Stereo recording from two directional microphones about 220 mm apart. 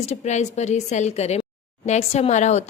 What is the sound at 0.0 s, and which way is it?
A woman's voice, 30° left (ahead or behind).